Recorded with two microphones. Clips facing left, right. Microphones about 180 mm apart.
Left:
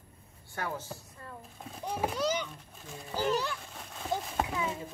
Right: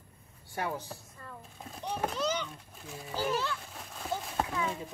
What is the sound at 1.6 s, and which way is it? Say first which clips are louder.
Speech: left 1 dB; centre (ahead or behind).